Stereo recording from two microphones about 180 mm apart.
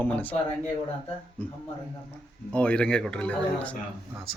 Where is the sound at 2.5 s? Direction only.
5° left (ahead or behind).